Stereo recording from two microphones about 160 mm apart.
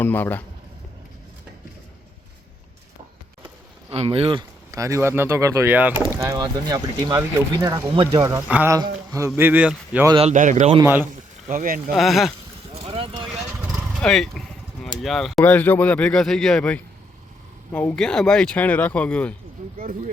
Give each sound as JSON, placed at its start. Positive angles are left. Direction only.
{"t": 0.0, "sound": "speech", "side_deg": 10}
{"t": 3.8, "sound": "speech", "side_deg": -40}
{"t": 7.9, "sound": "speech", "side_deg": -35}
{"t": 8.4, "sound": "speech", "side_deg": -10}
{"t": 8.7, "sound": "speech", "side_deg": -20}
{"t": 10.3, "sound": "a man's voice", "side_deg": -50}
{"t": 10.8, "sound": "speech", "side_deg": -15}
{"t": 11.4, "sound": "speech", "side_deg": -60}
{"t": 11.9, "sound": "speech", "side_deg": 0}
{"t": 12.7, "sound": "clip-clop", "side_deg": -35}
{"t": 13.7, "sound": "vehicle", "side_deg": 0}
{"t": 15.0, "sound": "speech", "side_deg": 0}